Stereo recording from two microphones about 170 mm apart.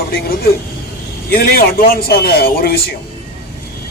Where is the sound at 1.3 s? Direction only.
60° left (ahead or behind).